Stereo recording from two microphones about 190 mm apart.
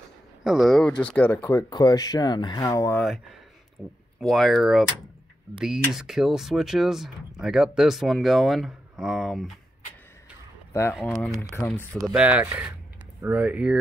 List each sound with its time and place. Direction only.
0.4 s speech: centre (ahead or behind); by 3.0 s 15° left (ahead or behind)
3.8 s speech: 5° right (ahead or behind)
10.7 s speech: 15° left (ahead or behind)
12.1 s speech: 5° right (ahead or behind)